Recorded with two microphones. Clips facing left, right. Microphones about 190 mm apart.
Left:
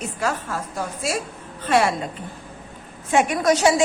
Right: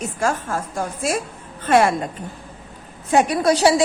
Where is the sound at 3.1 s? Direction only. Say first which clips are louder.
Right 2 dB; 35° right (ahead or behind).